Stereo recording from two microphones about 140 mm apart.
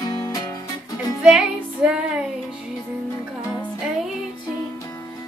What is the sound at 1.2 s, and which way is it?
Music, 5° right (ahead or behind).